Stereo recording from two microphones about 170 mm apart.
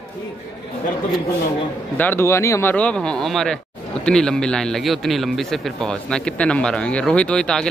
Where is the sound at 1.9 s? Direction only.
10° left (ahead or behind).